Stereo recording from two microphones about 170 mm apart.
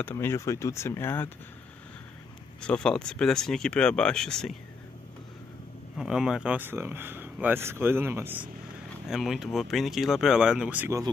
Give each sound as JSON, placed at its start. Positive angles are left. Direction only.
{"t": 0.0, "sound": "speech", "side_deg": 15}
{"t": 2.6, "sound": "speech", "side_deg": 5}
{"t": 5.9, "sound": "speech", "side_deg": -5}
{"t": 9.1, "sound": "speech", "side_deg": 0}